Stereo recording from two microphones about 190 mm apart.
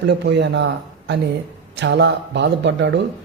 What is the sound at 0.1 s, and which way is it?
Speech, 65° right (ahead or behind).